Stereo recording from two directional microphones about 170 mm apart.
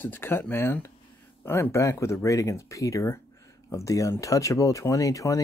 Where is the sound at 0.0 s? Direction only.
10° left (ahead or behind).